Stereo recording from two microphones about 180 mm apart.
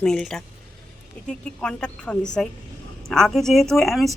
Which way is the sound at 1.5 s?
5° left (ahead or behind).